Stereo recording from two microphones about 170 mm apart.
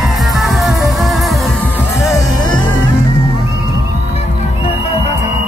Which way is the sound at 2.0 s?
20° left (ahead or behind).